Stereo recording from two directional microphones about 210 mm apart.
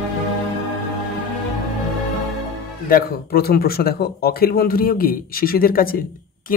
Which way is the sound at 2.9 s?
45° left (ahead or behind).